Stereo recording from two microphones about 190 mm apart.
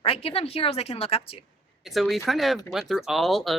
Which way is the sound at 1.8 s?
Centre (ahead or behind).